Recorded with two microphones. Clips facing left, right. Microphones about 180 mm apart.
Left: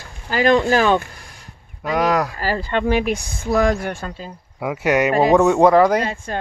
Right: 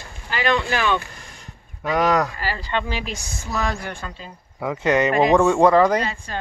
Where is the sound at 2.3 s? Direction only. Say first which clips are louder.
Left 4 dB; 45° left (ahead or behind).